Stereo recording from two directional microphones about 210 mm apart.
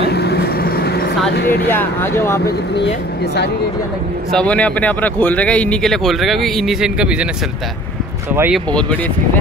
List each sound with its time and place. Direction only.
0.1 s vehicle: 50° left (ahead or behind)
1.3 s speech: 50° left (ahead or behind)
1.7 s speech: 10° left (ahead or behind)
2.4 s speech: 55° left (ahead or behind)
4.3 s speech: 5° left (ahead or behind)
8.3 s speech: 10° right (ahead or behind)